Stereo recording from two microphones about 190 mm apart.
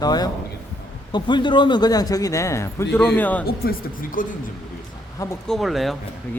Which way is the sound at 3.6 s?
45° left (ahead or behind).